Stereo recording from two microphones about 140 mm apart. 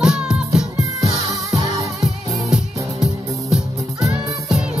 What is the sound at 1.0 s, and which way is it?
Music, 25° right (ahead or behind).